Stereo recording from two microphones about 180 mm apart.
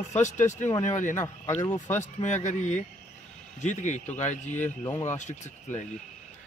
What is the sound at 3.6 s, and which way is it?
Speech, 40° left (ahead or behind).